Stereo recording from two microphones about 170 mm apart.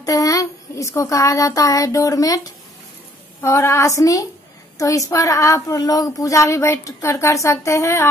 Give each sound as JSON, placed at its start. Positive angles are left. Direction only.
{"t": 0.0, "sound": "a woman's voice", "side_deg": 20}